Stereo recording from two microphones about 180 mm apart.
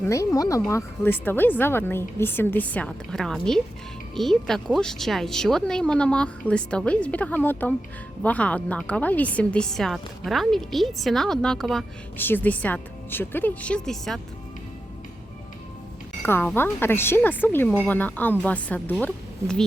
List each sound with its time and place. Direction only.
0.0 s a woman's voice: 15° left (ahead or behind); by 11.9 s centre (ahead or behind)
12.1 s a woman's voice: 10° left (ahead or behind)
16.2 s a woman's voice: 10° left (ahead or behind)